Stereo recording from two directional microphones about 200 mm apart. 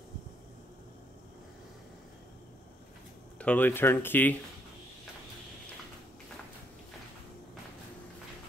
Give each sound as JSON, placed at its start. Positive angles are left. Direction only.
{"t": 3.3, "sound": "speech", "side_deg": 10}